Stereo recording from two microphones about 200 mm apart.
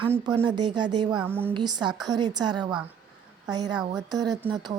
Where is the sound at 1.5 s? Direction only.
20° right (ahead or behind).